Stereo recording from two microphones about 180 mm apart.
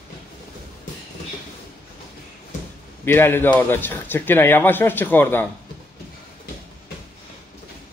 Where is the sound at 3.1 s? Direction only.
10° left (ahead or behind).